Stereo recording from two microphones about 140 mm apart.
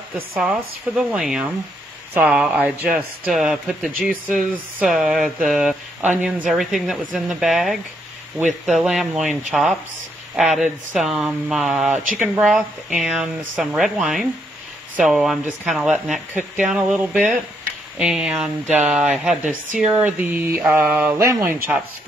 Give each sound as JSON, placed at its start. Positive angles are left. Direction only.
{"t": 0.4, "sound": "speech", "side_deg": -5}